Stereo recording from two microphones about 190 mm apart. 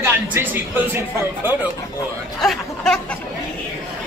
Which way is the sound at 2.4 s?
5° left (ahead or behind).